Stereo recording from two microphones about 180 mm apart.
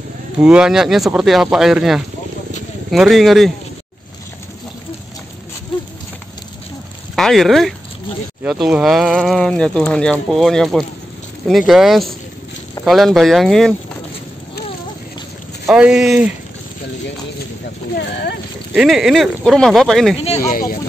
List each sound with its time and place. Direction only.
0.4 s speech: 5° right (ahead or behind)
7.2 s speech: centre (ahead or behind)
15.7 s speech: 5° right (ahead or behind)
18.7 s speech: 5° right (ahead or behind)
20.4 s speech: 50° left (ahead or behind)